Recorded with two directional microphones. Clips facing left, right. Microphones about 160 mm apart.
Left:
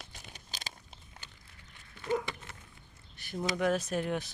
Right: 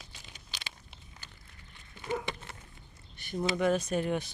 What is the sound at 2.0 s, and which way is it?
Dog, 15° right (ahead or behind).